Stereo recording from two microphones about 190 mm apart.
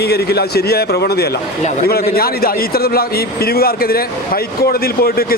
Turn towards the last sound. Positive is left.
turn(degrees=55)  # may be behind; listen again after turning